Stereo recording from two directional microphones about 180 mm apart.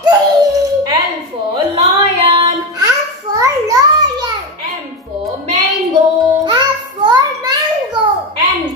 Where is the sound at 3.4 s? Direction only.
20° right (ahead or behind).